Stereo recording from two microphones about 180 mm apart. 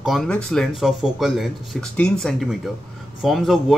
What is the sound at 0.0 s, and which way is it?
A man's voice, centre (ahead or behind).